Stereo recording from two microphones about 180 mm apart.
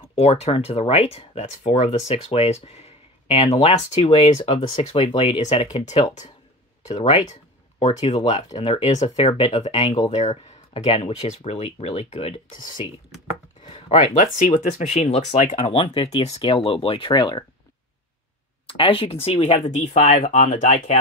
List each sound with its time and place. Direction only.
0.1 s speech: 35° left (ahead or behind)
13.7 s speech: 35° left (ahead or behind)
18.7 s speech: 30° left (ahead or behind)